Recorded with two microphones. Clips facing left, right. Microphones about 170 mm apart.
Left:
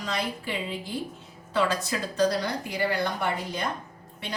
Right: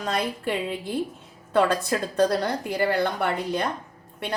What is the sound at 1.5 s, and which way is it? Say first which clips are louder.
A woman's voice: right 5 dB; 55° right (ahead or behind).